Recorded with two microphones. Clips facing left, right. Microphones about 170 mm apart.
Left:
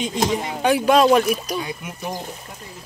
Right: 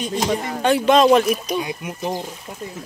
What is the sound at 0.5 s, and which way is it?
Speech, 10° left (ahead or behind).